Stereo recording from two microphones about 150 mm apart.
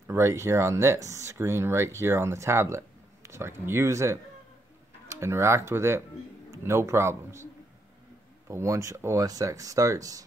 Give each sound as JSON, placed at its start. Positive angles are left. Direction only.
{"t": 0.1, "sound": "speech", "side_deg": -20}
{"t": 8.5, "sound": "speech", "side_deg": -20}